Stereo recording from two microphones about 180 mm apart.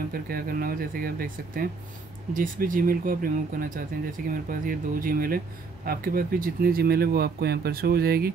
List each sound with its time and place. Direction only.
0.1 s speech: 55° right (ahead or behind)